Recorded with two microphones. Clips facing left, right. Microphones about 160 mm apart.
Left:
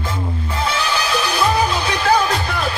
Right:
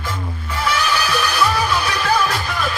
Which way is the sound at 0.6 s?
25° left (ahead or behind).